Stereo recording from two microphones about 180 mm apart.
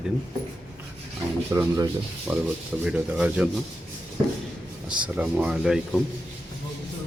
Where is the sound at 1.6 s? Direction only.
20° right (ahead or behind).